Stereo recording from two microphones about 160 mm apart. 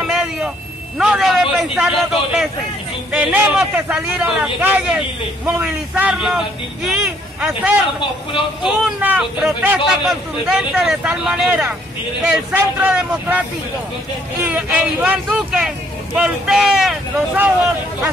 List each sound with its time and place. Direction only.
0.0 s vehicle: 5° right (ahead or behind)
0.9 s a man's voice: 5° right (ahead or behind)
8.0 s speech: 30° left (ahead or behind)
8.6 s a man's voice: 5° right (ahead or behind)
14.5 s a man's voice: 5° right (ahead or behind)